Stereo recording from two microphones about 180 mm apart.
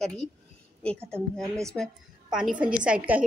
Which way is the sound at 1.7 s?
Centre (ahead or behind).